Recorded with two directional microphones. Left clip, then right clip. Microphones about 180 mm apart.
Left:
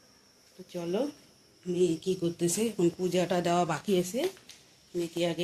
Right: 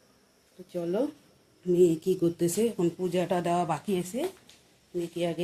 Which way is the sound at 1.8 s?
45° right (ahead or behind).